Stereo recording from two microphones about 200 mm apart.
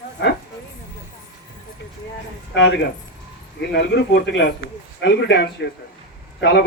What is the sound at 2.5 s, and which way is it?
Speech, 65° left (ahead or behind).